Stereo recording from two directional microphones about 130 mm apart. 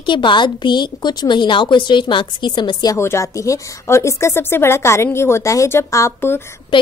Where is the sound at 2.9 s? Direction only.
20° left (ahead or behind).